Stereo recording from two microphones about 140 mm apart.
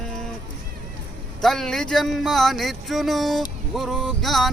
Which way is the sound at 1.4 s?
Centre (ahead or behind).